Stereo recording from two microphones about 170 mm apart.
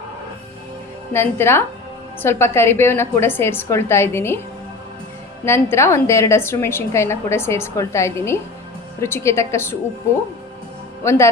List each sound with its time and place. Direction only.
1.1 s a woman's voice: 15° left (ahead or behind)
5.5 s a woman's voice: 15° left (ahead or behind)